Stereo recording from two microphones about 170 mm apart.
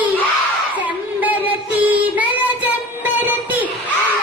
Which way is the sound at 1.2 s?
10° right (ahead or behind).